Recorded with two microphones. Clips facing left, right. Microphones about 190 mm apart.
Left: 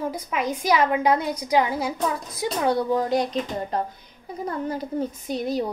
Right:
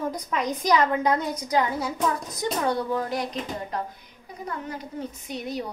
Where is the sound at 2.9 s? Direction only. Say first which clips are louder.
Left 5 dB; 25° left (ahead or behind).